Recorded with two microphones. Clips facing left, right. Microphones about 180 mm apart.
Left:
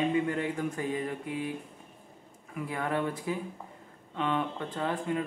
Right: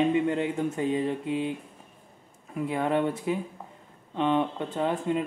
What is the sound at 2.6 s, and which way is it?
Speech, 25° right (ahead or behind).